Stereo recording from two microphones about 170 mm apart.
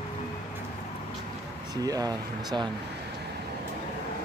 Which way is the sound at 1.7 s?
20° right (ahead or behind).